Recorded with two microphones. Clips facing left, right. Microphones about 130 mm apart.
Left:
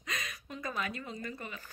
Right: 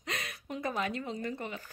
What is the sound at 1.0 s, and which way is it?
Speech, 20° right (ahead or behind).